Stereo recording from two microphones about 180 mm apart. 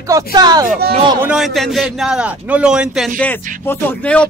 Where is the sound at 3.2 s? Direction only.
10° left (ahead or behind).